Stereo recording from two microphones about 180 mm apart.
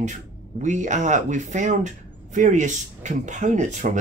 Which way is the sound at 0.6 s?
40° right (ahead or behind).